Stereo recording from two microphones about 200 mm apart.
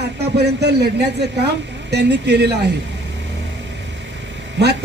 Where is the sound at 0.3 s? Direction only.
55° right (ahead or behind).